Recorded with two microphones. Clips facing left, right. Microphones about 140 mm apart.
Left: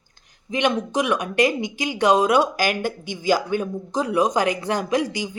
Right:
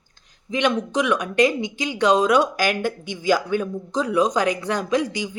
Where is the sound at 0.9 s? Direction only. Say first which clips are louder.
Right 1 dB; 5° left (ahead or behind).